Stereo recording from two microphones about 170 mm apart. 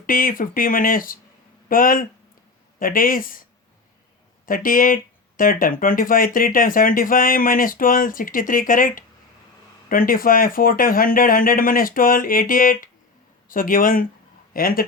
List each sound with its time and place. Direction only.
0.0 s speech: 55° left (ahead or behind)
4.4 s speech: 55° left (ahead or behind)